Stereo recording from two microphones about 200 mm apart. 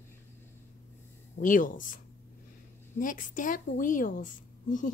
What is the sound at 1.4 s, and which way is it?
Speech, 40° left (ahead or behind).